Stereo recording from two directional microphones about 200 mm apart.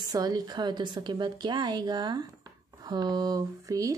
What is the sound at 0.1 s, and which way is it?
Speech, 20° right (ahead or behind).